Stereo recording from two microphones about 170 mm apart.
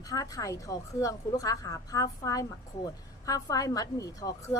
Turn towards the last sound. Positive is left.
turn(degrees=20)  # may be behind; listen again after turning